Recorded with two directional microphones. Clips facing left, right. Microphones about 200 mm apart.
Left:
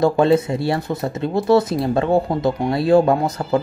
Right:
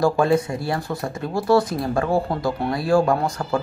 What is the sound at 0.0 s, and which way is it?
Speech, 25° left (ahead or behind).